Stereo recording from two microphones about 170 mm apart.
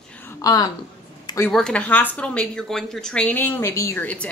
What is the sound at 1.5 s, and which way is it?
Speech, 5° left (ahead or behind).